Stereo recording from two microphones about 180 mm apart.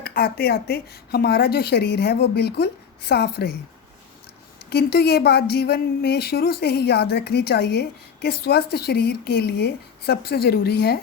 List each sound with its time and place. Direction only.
0.0 s speech: 55° left (ahead or behind)
4.7 s speech: 65° left (ahead or behind)